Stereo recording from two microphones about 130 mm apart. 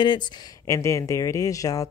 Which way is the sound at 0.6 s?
20° left (ahead or behind).